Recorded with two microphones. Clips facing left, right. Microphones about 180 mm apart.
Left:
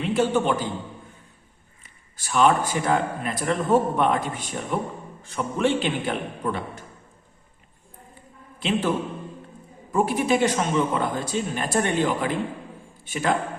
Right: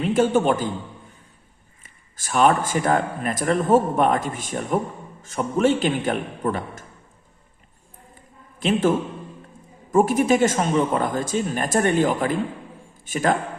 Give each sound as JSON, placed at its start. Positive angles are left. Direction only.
{"t": 0.0, "sound": "a man's voice", "side_deg": -45}
{"t": 1.8, "sound": "a man's voice", "side_deg": -45}
{"t": 8.5, "sound": "a man's voice", "side_deg": -45}